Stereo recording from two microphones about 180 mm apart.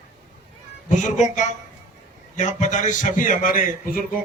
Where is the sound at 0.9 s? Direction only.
45° left (ahead or behind).